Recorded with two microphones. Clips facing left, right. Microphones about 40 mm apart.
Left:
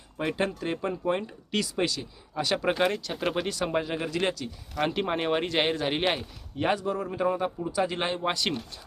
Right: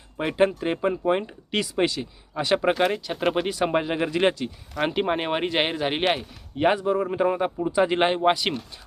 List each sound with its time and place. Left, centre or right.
0.2 s speech: right
3.6 s speech: right
4.7 s speech: centre; by 8.2 s right
8.2 s speech: centre